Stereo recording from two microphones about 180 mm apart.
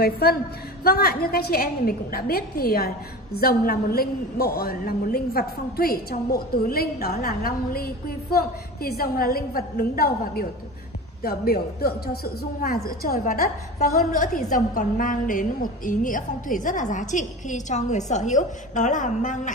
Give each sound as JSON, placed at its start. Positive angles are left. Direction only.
{"t": 0.0, "sound": "a woman's voice", "side_deg": 60}